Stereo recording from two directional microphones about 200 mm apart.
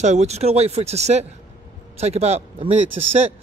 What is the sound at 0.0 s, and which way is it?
A man's voice, 35° right (ahead or behind).